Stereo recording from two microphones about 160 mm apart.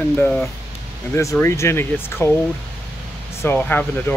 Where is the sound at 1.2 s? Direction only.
20° left (ahead or behind).